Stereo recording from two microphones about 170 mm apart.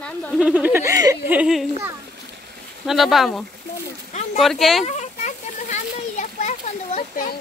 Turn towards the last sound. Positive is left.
turn(degrees=55)  # may be behind; listen again after turning